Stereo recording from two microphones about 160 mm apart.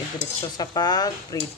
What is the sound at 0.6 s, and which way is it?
Speech, 25° left (ahead or behind).